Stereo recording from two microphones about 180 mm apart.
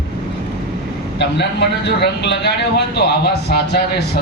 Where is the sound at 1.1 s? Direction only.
70° left (ahead or behind).